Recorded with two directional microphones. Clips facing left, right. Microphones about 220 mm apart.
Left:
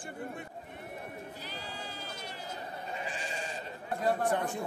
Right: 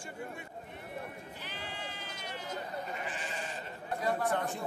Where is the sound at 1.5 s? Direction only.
40° left (ahead or behind).